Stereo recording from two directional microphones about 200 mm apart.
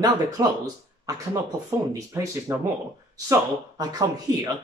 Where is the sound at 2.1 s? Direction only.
15° right (ahead or behind).